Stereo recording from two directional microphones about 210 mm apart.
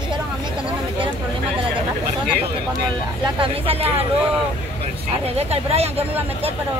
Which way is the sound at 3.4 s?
25° right (ahead or behind).